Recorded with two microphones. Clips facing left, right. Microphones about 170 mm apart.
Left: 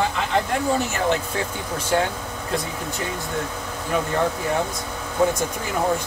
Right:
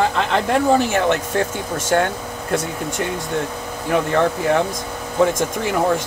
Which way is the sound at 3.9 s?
65° right (ahead or behind).